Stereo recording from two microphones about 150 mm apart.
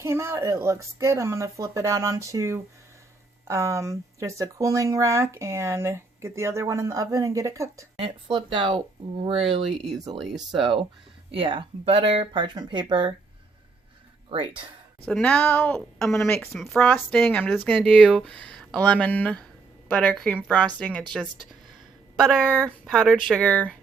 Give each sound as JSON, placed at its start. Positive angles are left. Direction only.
{"t": 0.0, "sound": "speech", "side_deg": -15}
{"t": 7.9, "sound": "speech", "side_deg": -35}
{"t": 9.7, "sound": "speech", "side_deg": 0}
{"t": 11.3, "sound": "speech", "side_deg": -35}
{"t": 14.3, "sound": "speech", "side_deg": -35}
{"t": 15.0, "sound": "a woman's voice", "side_deg": 5}
{"t": 17.7, "sound": "a woman's voice", "side_deg": 0}
{"t": 22.3, "sound": "a woman's voice", "side_deg": 5}